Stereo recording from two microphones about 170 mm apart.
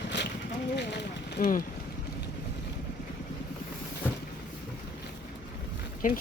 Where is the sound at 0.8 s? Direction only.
80° left.